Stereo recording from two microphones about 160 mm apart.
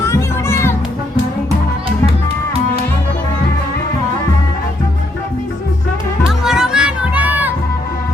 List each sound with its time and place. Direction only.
0.0 s music: 15° left (ahead or behind)
6.4 s music: 5° right (ahead or behind)